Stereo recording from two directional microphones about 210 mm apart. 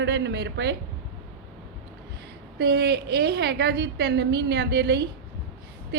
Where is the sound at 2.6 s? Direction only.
50° right (ahead or behind).